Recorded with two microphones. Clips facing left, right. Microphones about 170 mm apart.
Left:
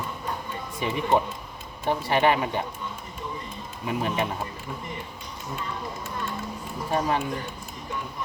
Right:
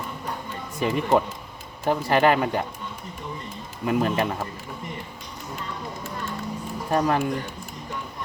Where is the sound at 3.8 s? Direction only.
55° right (ahead or behind).